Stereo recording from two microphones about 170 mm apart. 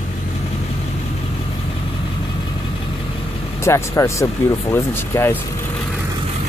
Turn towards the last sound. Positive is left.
turn(degrees=15)  # may be behind; listen again after turning